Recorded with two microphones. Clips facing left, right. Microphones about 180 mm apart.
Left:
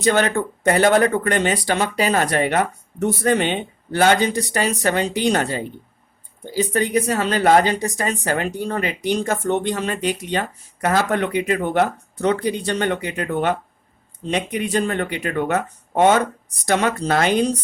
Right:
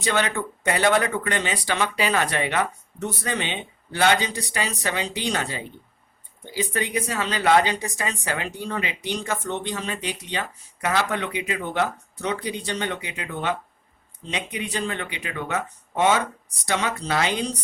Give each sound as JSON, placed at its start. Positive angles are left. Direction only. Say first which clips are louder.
{"t": 0.0, "sound": "speech", "louder": "left 6 dB", "side_deg": 45}